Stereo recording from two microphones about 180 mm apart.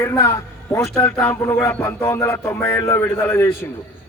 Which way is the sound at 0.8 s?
Centre (ahead or behind).